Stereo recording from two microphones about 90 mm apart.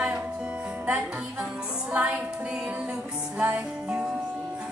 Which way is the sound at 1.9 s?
10° right (ahead or behind).